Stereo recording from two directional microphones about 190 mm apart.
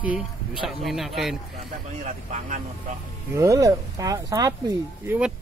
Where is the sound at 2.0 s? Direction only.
40° right (ahead or behind).